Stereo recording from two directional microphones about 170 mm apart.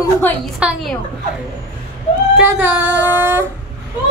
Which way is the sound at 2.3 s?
10° right (ahead or behind).